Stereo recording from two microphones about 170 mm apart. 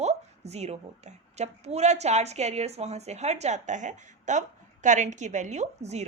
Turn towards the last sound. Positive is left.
turn(degrees=-40)  # may be behind; listen again after turning